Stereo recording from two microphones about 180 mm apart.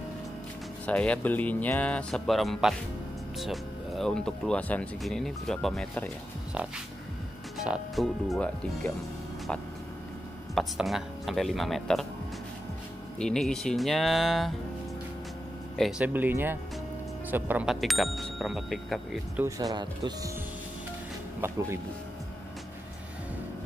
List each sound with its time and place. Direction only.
0.8 s speech: 5° left (ahead or behind)
7.5 s speech: 5° right (ahead or behind)
10.5 s speech: centre (ahead or behind)
13.2 s speech: 5° left (ahead or behind)
15.8 s speech: 10° right (ahead or behind)
19.3 s speech: 15° right (ahead or behind)
21.4 s speech: 15° right (ahead or behind)